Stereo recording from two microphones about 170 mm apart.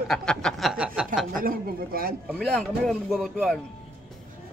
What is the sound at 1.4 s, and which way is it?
Speech, 60° right (ahead or behind).